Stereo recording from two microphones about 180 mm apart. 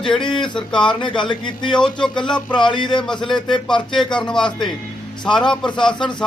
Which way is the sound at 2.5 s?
25° left (ahead or behind).